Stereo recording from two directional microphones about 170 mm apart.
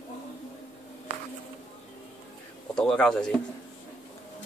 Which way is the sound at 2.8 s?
5° left (ahead or behind).